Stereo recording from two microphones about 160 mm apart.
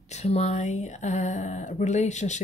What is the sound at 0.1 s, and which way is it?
Speech, 45° left (ahead or behind).